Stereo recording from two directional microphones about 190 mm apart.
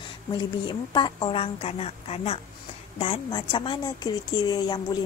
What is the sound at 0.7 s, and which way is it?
A woman's voice, 25° left (ahead or behind).